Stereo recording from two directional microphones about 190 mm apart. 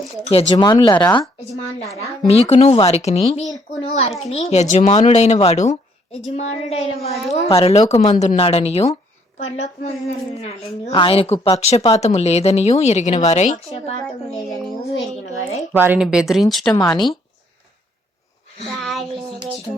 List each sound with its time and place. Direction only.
0.3 s speech: 30° left (ahead or behind)
2.2 s a woman's voice: 30° left (ahead or behind)
14.8 s speech: 65° left (ahead or behind)
15.7 s a woman's voice: 10° right (ahead or behind)
18.6 s a sound: centre (ahead or behind)